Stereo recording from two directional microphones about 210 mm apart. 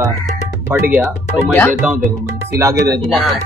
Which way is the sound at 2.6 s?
15° right (ahead or behind).